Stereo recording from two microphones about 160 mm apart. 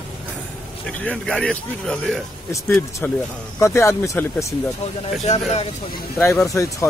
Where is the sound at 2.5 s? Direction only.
15° left (ahead or behind).